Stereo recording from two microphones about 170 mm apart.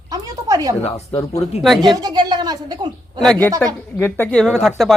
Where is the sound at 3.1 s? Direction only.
5° left (ahead or behind).